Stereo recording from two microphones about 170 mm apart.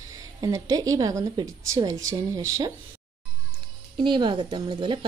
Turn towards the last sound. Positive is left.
turn(degrees=-30)  # may be behind; listen again after turning